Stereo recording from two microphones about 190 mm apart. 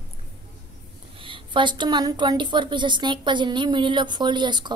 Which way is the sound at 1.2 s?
25° right (ahead or behind).